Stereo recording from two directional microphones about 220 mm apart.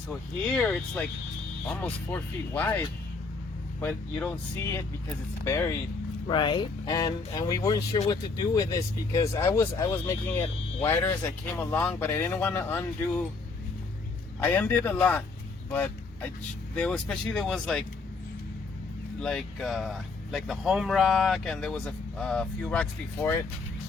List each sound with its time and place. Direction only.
0.5 s speech: 5° left (ahead or behind)
14.4 s speech: 10° left (ahead or behind)
15.7 s vehicle: 5° left (ahead or behind)
16.7 s speech: 5° left (ahead or behind)
19.2 s speech: centre (ahead or behind)